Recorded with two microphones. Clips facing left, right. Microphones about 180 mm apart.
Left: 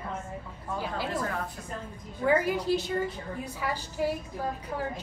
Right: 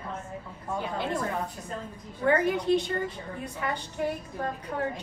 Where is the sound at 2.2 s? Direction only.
5° left (ahead or behind).